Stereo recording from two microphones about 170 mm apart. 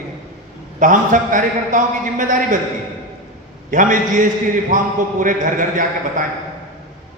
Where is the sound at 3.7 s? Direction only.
50° right (ahead or behind).